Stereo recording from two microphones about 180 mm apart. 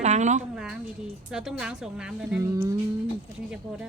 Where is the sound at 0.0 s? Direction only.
40° right (ahead or behind).